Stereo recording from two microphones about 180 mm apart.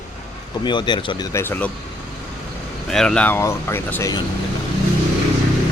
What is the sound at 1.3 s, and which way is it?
Speech, 15° left (ahead or behind).